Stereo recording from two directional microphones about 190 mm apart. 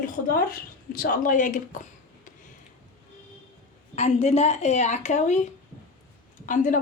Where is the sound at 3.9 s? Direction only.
35° left (ahead or behind).